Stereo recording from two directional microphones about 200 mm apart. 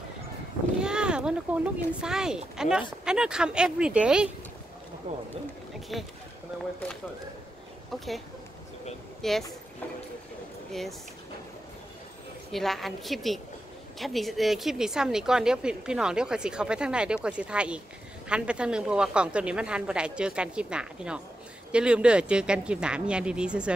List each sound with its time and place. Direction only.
0.8 s a woman's voice: 5° right (ahead or behind)
5.1 s speech: 35° right (ahead or behind)
5.9 s a woman's voice: centre (ahead or behind)
7.9 s a woman's voice: centre (ahead or behind)
9.2 s a woman's voice: centre (ahead or behind)
10.7 s speech: centre (ahead or behind)
12.4 s a woman's voice: centre (ahead or behind)